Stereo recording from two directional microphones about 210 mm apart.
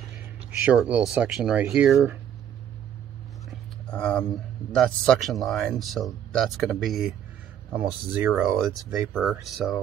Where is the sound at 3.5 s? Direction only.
5° left (ahead or behind).